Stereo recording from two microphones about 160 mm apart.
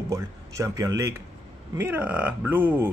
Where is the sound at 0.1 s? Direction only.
20° right (ahead or behind).